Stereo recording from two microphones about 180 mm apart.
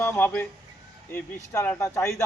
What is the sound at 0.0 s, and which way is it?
Speech, 10° left (ahead or behind).